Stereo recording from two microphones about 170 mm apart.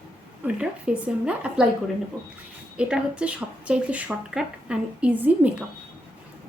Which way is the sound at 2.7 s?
5° right (ahead or behind).